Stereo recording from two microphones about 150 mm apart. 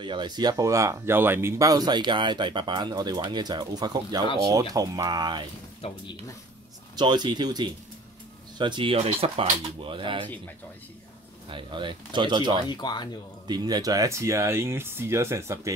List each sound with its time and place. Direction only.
0.0 s speech: 30° right (ahead or behind)
5.8 s speech: 40° left (ahead or behind)
7.0 s speech: 30° right (ahead or behind)
11.5 s speech: 30° right (ahead or behind)
12.6 s speech: 30° left (ahead or behind)
13.5 s speech: 25° right (ahead or behind)